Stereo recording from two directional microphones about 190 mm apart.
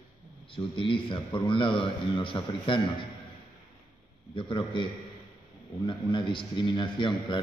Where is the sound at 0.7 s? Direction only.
25° left (ahead or behind).